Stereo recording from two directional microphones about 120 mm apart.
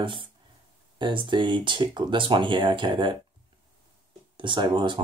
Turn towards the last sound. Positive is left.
turn(degrees=-45)  # may be behind; listen again after turning